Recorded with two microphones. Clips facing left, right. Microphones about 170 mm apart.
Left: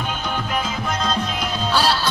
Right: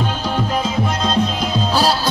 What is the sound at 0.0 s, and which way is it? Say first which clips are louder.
Music: right 5 dB; 30° right (ahead or behind).